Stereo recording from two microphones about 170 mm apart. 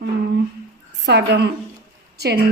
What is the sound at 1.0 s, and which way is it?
Speech, 85° right.